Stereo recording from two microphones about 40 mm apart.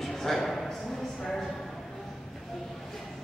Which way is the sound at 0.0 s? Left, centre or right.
Centre.